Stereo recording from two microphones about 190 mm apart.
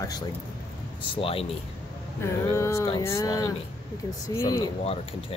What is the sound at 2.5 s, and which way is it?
A woman's voice, 15° left (ahead or behind).